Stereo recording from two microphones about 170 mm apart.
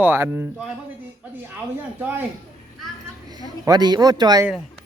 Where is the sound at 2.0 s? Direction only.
10° right (ahead or behind).